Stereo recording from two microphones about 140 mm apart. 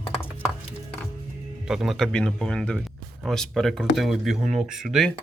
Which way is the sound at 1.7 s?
5° right (ahead or behind).